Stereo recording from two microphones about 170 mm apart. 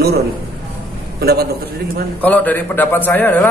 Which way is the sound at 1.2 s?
65° right (ahead or behind).